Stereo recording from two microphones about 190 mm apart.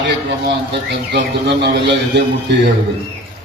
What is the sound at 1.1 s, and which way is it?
Speech, 60° right (ahead or behind).